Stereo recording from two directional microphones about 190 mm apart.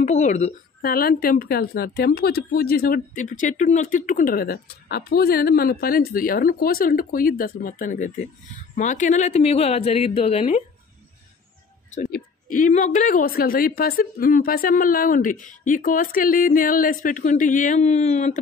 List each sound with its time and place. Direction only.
0.0 s a woman's voice: 40° left (ahead or behind)
12.1 s a woman's voice: 45° left (ahead or behind)